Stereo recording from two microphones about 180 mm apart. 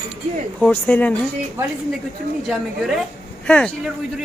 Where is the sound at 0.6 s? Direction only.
10° left (ahead or behind).